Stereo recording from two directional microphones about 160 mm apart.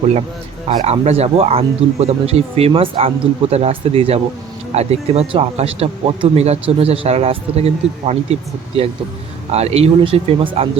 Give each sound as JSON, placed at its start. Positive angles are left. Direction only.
{"t": 0.9, "sound": "speech", "side_deg": -40}